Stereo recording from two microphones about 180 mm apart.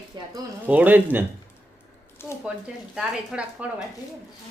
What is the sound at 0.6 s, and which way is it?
Speech, 10° right (ahead or behind).